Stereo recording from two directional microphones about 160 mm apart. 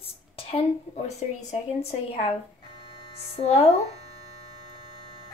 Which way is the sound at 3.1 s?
40° left (ahead or behind).